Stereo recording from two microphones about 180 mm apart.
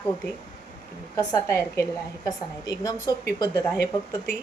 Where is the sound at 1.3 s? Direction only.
15° left (ahead or behind).